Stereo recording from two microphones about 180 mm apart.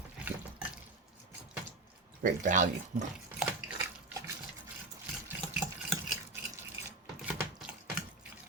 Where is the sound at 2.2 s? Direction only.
45° right (ahead or behind).